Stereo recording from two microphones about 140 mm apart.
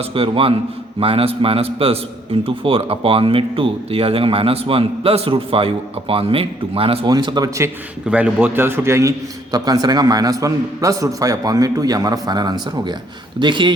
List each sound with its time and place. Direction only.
0.0 s a man's voice: 40° right (ahead or behind)
7.1 s a man's voice: 30° right (ahead or behind)
8.0 s a man's voice: 10° right (ahead or behind); by 13.7 s 35° right (ahead or behind)